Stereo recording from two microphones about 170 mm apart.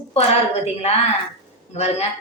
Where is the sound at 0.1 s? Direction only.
40° left (ahead or behind).